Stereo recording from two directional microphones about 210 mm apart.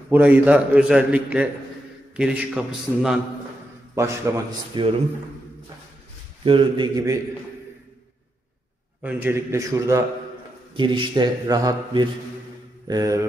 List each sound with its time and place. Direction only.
0.1 s a man's voice: 5° right (ahead or behind)
3.9 s a man's voice: 15° right (ahead or behind)
6.4 s a man's voice: 25° right (ahead or behind)
9.0 s a man's voice: 10° right (ahead or behind)